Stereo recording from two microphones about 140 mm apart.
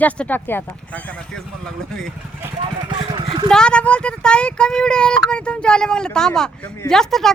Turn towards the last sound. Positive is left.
turn(degrees=5)  # may be behind; listen again after turning